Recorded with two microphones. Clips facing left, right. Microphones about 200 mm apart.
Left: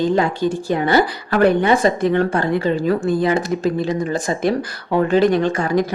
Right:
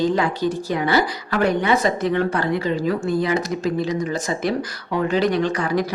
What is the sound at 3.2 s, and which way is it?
Speech, 50° left (ahead or behind).